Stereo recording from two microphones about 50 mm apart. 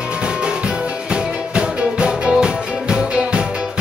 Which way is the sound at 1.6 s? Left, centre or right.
Right.